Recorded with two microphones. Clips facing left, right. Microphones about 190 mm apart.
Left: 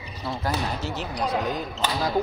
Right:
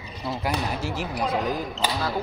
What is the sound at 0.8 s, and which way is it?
Speech, 10° right (ahead or behind).